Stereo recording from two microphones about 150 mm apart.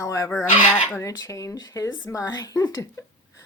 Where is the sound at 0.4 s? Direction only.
55° left (ahead or behind).